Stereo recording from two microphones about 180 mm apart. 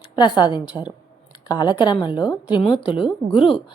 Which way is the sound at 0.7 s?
10° right (ahead or behind).